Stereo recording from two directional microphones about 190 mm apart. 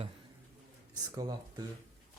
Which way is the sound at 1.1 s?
20° right (ahead or behind).